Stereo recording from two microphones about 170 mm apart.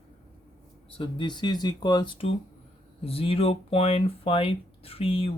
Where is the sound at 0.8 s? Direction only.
30° left (ahead or behind).